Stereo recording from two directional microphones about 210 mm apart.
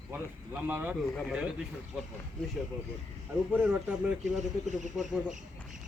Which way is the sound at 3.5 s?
5° right (ahead or behind).